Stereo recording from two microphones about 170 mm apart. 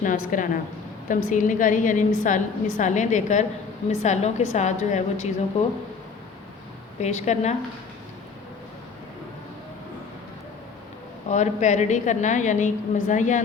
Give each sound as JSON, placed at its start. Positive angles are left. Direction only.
{"t": 0.0, "sound": "a woman's voice", "side_deg": 50}
{"t": 7.0, "sound": "a woman's voice", "side_deg": 40}
{"t": 11.3, "sound": "a woman's voice", "side_deg": 45}